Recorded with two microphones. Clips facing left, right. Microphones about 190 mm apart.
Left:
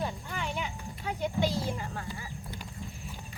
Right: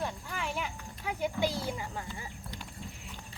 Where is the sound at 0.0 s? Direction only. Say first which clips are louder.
Left 1 dB; centre (ahead or behind); by 2.3 s 20° right (ahead or behind).